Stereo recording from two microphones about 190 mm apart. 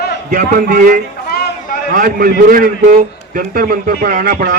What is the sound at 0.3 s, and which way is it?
A man's voice, 45° right (ahead or behind).